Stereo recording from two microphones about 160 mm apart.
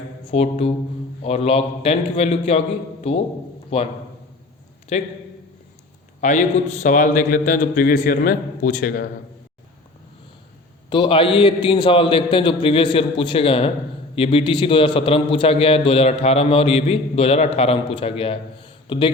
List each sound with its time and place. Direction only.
0.3 s a man's voice: 45° left (ahead or behind)
3.7 s a man's voice: 40° left (ahead or behind)
4.9 s a man's voice: 45° left (ahead or behind)
6.1 s a man's voice: 50° left (ahead or behind)
10.8 s a man's voice: 30° left (ahead or behind)